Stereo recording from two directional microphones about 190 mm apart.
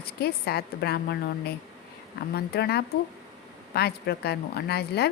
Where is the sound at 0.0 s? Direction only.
55° left (ahead or behind).